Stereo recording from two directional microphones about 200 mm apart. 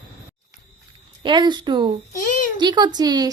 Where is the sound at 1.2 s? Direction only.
25° right (ahead or behind).